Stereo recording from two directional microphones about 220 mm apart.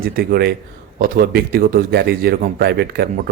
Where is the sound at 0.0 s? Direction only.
45° right (ahead or behind).